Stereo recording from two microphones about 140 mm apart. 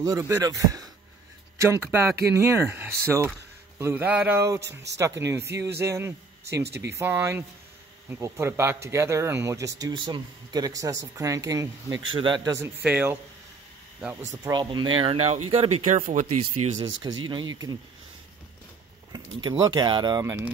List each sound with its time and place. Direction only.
0.3 s a man's voice: 25° right (ahead or behind)
12.1 s speech: 35° right (ahead or behind)
12.4 s a man's voice: 20° right (ahead or behind)
14.4 s speech: 30° right (ahead or behind)
15.8 s speech: 60° right (ahead or behind)
16.8 s a man's voice: 30° right (ahead or behind)
19.1 s a man's voice: 30° right (ahead or behind)